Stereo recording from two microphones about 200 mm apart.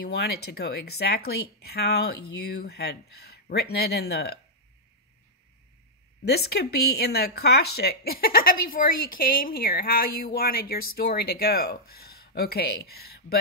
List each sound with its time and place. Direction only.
0.0 s speech: 55° left (ahead or behind)
6.2 s speech: 55° left (ahead or behind)